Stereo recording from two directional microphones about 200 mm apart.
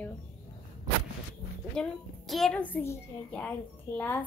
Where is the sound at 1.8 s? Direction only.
Centre (ahead or behind).